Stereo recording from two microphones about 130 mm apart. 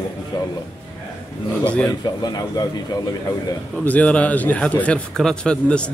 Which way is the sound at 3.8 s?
10° left (ahead or behind).